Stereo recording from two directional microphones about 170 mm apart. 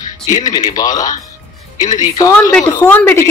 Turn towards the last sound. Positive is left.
turn(degrees=15)  # may be behind; listen again after turning